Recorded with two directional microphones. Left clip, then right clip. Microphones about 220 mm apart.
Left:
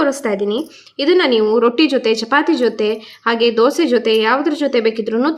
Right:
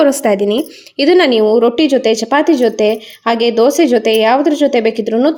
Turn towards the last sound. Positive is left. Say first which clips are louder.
# right 4 dB
turn(degrees=-15)  # may be behind; listen again after turning